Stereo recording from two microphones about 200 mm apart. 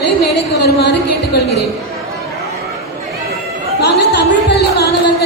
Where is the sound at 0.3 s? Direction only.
55° left (ahead or behind).